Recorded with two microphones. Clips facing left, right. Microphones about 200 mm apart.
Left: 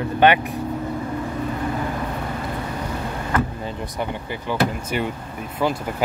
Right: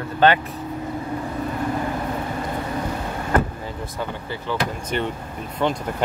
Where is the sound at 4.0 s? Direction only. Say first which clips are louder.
Left 1 dB; 15° left (ahead or behind).